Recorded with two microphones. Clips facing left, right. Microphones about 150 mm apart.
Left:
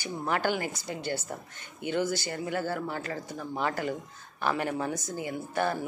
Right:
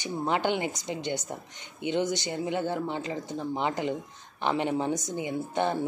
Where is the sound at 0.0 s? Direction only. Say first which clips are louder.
Right 2 dB; 20° right (ahead or behind).